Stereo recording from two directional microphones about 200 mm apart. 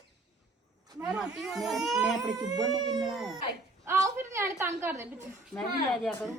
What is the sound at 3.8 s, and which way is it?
A woman's voice, 15° right (ahead or behind).